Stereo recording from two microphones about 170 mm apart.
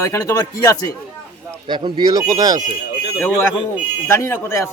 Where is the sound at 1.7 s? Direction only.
30° right (ahead or behind).